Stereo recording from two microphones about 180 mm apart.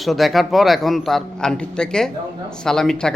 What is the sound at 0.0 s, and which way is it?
A man's voice, centre (ahead or behind).